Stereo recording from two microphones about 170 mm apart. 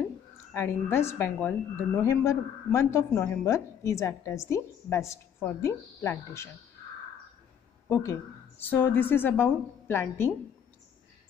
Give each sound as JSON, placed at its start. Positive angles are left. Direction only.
{"t": 0.5, "sound": "a woman's voice", "side_deg": 15}
{"t": 7.9, "sound": "a woman's voice", "side_deg": 15}